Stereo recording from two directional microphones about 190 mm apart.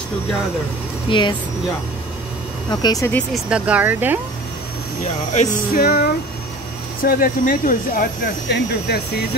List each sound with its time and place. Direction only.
1.0 s speech: 25° left (ahead or behind)
2.7 s speech: 20° left (ahead or behind)
3.3 s speech: 5° right (ahead or behind)
5.3 s speech: 45° left (ahead or behind)
8.5 s speech: 60° left (ahead or behind)